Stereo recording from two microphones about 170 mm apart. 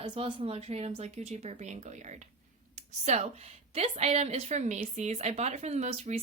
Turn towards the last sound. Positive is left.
turn(degrees=-40)  # may be behind; listen again after turning